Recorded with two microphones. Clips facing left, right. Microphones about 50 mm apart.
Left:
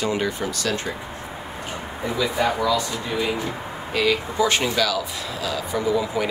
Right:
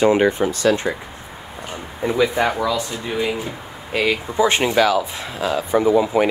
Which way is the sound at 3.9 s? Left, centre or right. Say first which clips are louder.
Right 1 dB; right.